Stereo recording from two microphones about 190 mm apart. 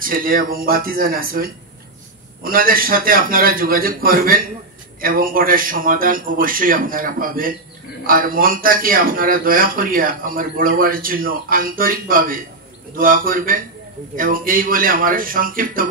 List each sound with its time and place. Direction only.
0.0 s a man's voice: 50° right (ahead or behind)